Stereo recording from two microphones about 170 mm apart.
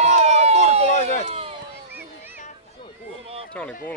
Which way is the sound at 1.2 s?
35° right (ahead or behind).